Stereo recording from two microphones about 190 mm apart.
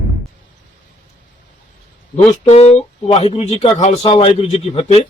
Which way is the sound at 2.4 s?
35° left (ahead or behind).